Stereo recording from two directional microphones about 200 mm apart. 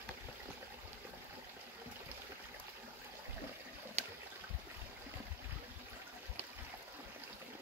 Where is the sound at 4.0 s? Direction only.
35° right (ahead or behind).